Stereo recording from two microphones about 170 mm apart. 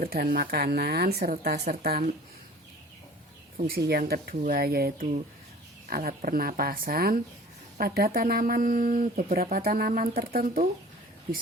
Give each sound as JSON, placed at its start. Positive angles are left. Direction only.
{"t": 0.0, "sound": "speech", "side_deg": -60}
{"t": 3.7, "sound": "speech", "side_deg": -65}